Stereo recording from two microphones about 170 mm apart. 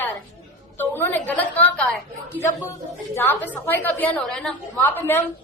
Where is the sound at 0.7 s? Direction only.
10° left (ahead or behind).